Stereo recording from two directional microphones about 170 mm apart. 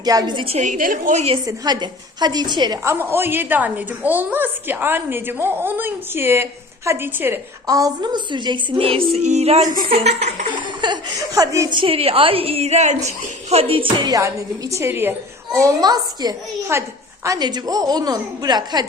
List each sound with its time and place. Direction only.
0.0 s a woman's voice: 25° right (ahead or behind); by 1.4 s 40° right (ahead or behind)
1.5 s speech: 25° right (ahead or behind)
2.8 s a woman's voice: 15° right (ahead or behind); by 9.9 s 50° right (ahead or behind)
9.9 s a woman's voice: 40° right (ahead or behind)
10.5 s speech: 25° right (ahead or behind)
11.8 s a woman's voice: 35° right (ahead or behind)